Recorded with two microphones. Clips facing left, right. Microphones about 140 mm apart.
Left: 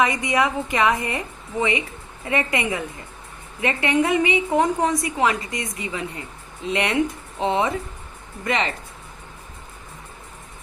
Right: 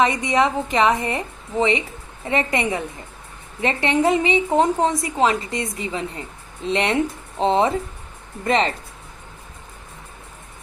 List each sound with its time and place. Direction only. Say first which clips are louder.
0.0 s a woman's voice: right 2 dB; 25° right (ahead or behind)